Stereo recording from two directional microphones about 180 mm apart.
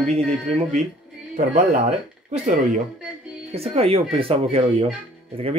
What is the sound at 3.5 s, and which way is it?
Speech, 35° right (ahead or behind).